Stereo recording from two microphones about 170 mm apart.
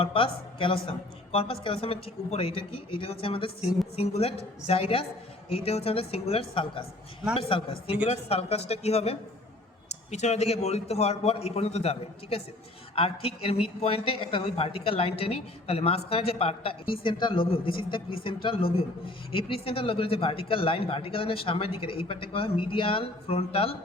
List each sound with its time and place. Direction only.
0.0 s a woman's voice: 30° left (ahead or behind)